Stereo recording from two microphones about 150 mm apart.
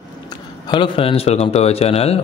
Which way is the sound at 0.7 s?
35° left (ahead or behind).